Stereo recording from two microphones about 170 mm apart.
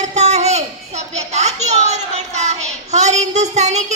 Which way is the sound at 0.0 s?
40° right (ahead or behind).